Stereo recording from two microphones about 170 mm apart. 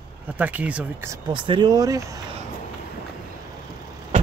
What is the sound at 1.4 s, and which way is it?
Speech, 25° right (ahead or behind).